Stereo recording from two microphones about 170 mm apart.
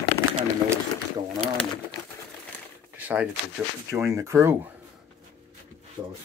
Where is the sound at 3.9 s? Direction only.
15° right (ahead or behind).